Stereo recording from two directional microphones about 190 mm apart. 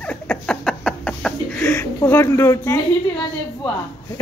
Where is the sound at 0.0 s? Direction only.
5° left (ahead or behind).